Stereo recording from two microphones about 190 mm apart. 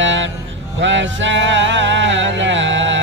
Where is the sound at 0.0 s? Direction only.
75° right (ahead or behind).